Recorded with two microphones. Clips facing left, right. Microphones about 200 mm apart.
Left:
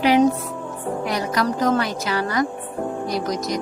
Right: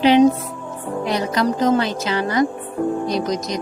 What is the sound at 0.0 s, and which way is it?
A woman's voice, 25° right (ahead or behind).